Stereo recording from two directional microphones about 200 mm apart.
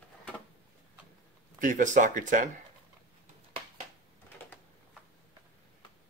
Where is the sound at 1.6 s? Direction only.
40° right (ahead or behind).